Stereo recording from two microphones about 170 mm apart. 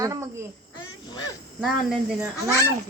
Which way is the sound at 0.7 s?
25° left (ahead or behind).